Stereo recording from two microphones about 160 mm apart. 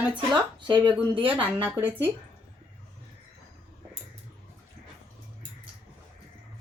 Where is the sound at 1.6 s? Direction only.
15° right (ahead or behind).